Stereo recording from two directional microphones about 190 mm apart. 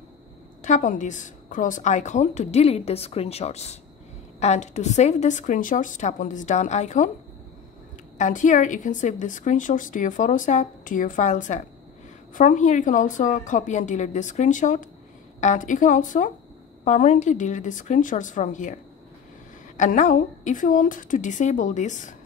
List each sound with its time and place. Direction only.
0.7 s a woman's voice: 40° left (ahead or behind)
8.2 s a woman's voice: 40° left (ahead or behind)
19.8 s a woman's voice: 40° left (ahead or behind)